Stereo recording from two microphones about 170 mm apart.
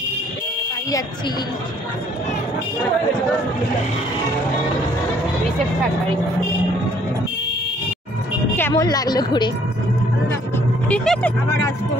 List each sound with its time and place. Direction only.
8.5 s a sound: 15° left (ahead or behind)
8.8 s a woman's voice: 25° left (ahead or behind)
10.9 s speech: 5° left (ahead or behind)